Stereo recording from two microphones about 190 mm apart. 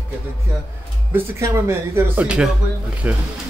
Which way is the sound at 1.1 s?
15° right (ahead or behind).